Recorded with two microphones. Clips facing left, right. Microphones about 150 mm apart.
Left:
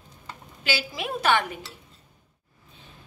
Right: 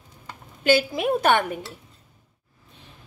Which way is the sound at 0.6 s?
50° right (ahead or behind).